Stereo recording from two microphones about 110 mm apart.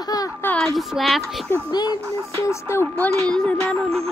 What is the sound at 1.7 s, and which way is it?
Speech, 40° left (ahead or behind).